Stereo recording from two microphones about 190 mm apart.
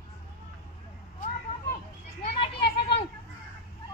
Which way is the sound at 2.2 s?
30° left (ahead or behind).